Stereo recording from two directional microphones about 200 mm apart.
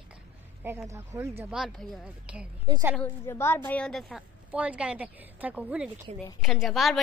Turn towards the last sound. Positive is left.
turn(degrees=0)  # may be behind; listen again after turning